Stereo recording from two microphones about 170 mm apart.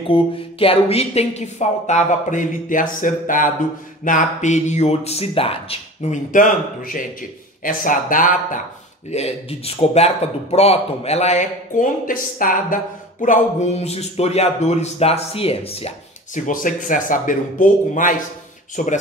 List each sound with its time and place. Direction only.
0.1 s speech: 35° left (ahead or behind); by 8.6 s 50° left (ahead or behind)
9.1 s a man's voice: 35° left (ahead or behind)
16.3 s speech: 50° left (ahead or behind)